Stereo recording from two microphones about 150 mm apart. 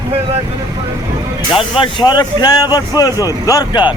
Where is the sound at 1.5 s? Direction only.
35° left (ahead or behind).